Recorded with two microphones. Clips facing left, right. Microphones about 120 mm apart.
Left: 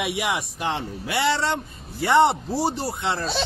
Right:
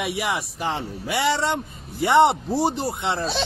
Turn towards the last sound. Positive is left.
turn(degrees=-15)  # may be behind; listen again after turning